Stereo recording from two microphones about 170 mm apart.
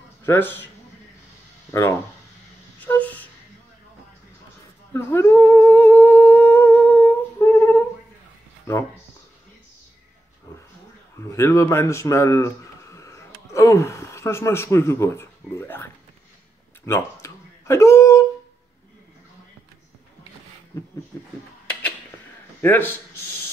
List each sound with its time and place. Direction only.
0.2 s speech: 15° left (ahead or behind)
1.7 s speech: 15° left (ahead or behind)
2.8 s a sound: 10° left (ahead or behind)
4.9 s humming: 15° left (ahead or behind)
11.1 s speech: 15° left (ahead or behind)
16.8 s a sound: 15° left (ahead or behind)
22.6 s speech: 10° left (ahead or behind)